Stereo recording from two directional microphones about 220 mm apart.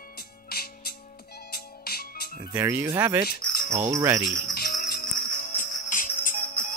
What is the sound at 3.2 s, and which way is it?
Cricket, 45° left (ahead or behind).